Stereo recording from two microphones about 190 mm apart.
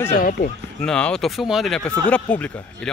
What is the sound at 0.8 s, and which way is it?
Speech, 5° left (ahead or behind).